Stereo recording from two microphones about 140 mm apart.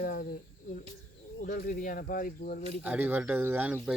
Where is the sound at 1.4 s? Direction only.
90° left.